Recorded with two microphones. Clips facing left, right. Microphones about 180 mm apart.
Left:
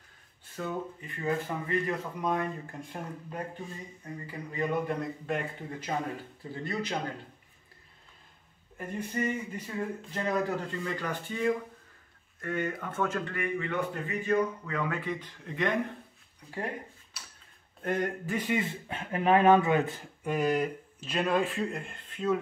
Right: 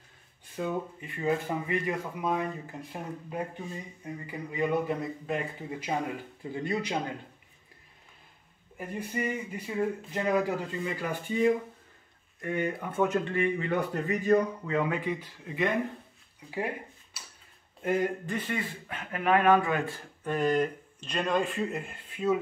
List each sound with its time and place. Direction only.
0.6 s speech: 15° right (ahead or behind)
2.1 s speech: 5° right (ahead or behind)
8.7 s speech: 10° right (ahead or behind); by 14.7 s 40° right (ahead or behind)
14.7 s speech: 20° right (ahead or behind); by 18.3 s 5° right (ahead or behind)
18.3 s speech: 15° left (ahead or behind); by 22.4 s 10° right (ahead or behind)